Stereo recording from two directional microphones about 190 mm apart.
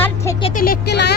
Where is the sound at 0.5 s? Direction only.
55° left (ahead or behind).